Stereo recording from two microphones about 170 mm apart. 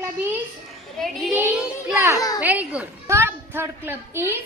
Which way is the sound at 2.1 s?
20° left (ahead or behind).